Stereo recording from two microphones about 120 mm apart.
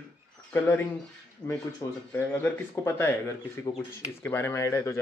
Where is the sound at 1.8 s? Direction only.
30° left (ahead or behind).